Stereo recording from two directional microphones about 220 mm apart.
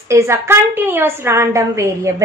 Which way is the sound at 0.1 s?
10° right (ahead or behind).